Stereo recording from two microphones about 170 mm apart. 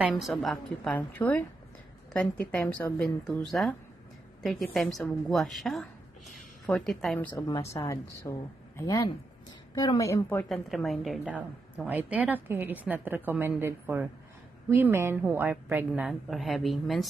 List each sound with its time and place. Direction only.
0.0 s speech: centre (ahead or behind)
7.3 s a woman's voice: 20° left (ahead or behind)
10.5 s a woman's voice: centre (ahead or behind)
16.1 s speech: centre (ahead or behind)